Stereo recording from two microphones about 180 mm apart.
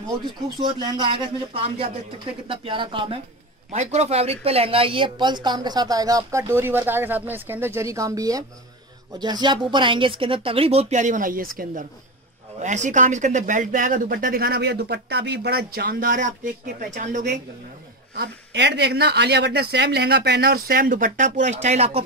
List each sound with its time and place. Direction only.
0.6 s a woman's voice: 25° right (ahead or behind)
3.7 s a woman's voice: 40° right (ahead or behind)
12.5 s speech: 40° right (ahead or behind)
18.1 s speech: 65° right (ahead or behind); by 22.0 s 35° right (ahead or behind)